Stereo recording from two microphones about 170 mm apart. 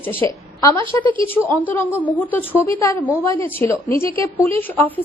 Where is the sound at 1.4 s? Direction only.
10° left (ahead or behind).